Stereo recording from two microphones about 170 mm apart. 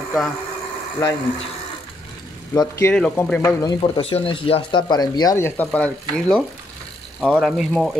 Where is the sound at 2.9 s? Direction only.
5° left (ahead or behind).